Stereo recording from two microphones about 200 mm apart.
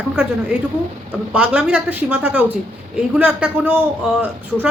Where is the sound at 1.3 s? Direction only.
5° right (ahead or behind).